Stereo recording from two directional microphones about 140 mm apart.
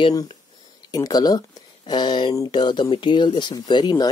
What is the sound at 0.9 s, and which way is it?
Speech, 30° left (ahead or behind).